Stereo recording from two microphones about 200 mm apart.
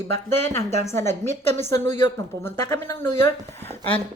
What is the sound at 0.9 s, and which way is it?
Speech, 10° left (ahead or behind).